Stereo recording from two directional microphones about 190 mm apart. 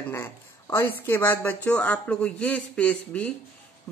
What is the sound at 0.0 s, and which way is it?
Speech, 10° left (ahead or behind).